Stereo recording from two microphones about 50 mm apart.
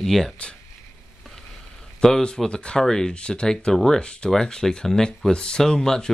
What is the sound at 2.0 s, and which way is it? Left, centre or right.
Speech, centre.